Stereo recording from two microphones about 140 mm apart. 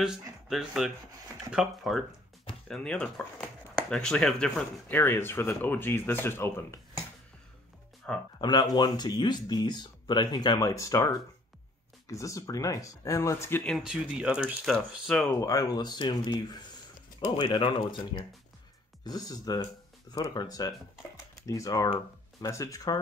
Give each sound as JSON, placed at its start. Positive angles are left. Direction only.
{"t": 0.0, "sound": "speech", "side_deg": -5}
{"t": 8.0, "sound": "speech", "side_deg": 5}
{"t": 8.4, "sound": "speech", "side_deg": 30}
{"t": 13.7, "sound": "speech", "side_deg": -5}
{"t": 15.4, "sound": "speech", "side_deg": 25}